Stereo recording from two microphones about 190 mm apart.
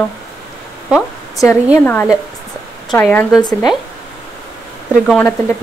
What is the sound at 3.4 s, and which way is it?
Speech, 20° left (ahead or behind).